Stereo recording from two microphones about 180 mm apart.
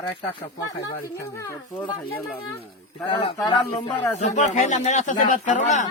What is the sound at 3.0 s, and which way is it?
Speech, 25° left (ahead or behind).